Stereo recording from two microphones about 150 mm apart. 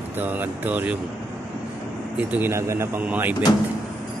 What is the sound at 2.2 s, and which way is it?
Speech, 10° right (ahead or behind).